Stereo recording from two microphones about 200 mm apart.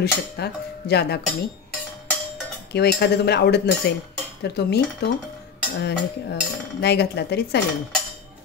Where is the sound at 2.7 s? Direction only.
55° left (ahead or behind).